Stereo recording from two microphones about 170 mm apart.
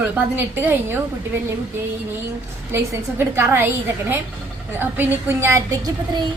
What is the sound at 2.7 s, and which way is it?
A woman's voice, 15° right (ahead or behind).